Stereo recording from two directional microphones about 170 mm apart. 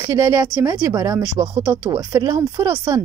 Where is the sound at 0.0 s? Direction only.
15° right (ahead or behind).